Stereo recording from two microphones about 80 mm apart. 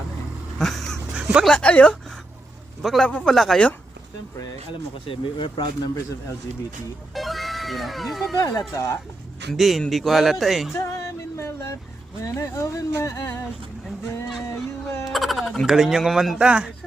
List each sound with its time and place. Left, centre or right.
0.6 s duck: centre
1.1 s a sound: centre
1.5 s speech: centre
2.8 s speech: centre
5.0 s speech: left
7.1 s speech: centre
8.4 s speech: left
9.5 s speech: centre
10.8 s a sound: left
12.2 s speech: left
14.3 s a sound: centre
15.0 s speech: centre